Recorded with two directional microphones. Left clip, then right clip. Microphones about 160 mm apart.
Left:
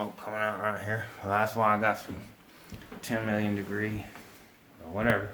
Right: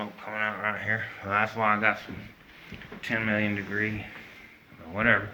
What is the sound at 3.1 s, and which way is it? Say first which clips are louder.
Speech: right 3 dB; 40° left (ahead or behind).